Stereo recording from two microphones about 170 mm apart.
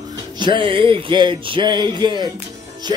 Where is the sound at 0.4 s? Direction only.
30° right (ahead or behind).